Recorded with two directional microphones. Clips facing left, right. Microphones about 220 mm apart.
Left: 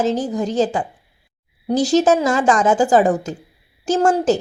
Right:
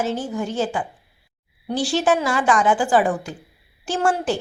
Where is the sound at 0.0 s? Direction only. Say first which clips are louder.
Left 5 dB; 35° left (ahead or behind).